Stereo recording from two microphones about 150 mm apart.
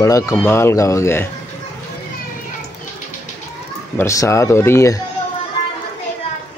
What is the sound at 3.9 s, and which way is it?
Speech, 20° left (ahead or behind).